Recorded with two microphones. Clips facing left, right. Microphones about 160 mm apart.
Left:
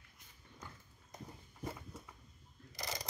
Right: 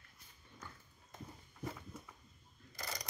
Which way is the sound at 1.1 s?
15° left (ahead or behind).